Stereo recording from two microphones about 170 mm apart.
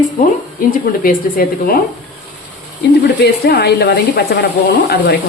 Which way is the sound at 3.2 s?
70° left (ahead or behind).